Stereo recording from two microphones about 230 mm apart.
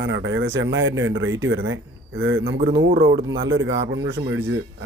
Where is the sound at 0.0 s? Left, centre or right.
Right.